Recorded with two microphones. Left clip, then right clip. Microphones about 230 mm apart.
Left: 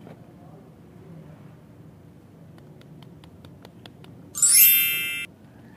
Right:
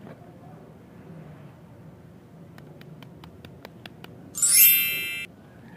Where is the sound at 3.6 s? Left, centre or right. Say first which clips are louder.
Right 4 dB; centre.